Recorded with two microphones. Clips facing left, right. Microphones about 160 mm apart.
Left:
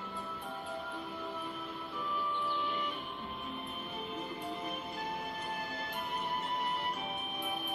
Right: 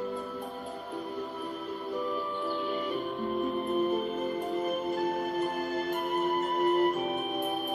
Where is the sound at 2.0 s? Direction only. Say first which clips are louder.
Right 2 dB; 40° right (ahead or behind).